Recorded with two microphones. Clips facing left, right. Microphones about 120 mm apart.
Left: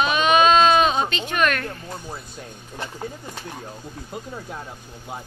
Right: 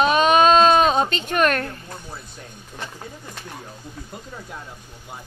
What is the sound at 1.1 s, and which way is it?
Speech, 40° right (ahead or behind).